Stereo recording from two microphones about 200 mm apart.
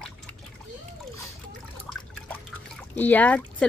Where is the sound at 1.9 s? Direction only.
Centre (ahead or behind).